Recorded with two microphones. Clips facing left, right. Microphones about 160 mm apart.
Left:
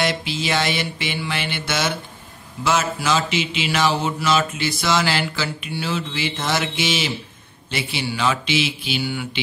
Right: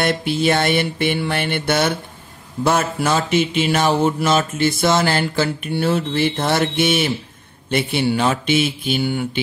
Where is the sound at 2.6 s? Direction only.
55° right (ahead or behind).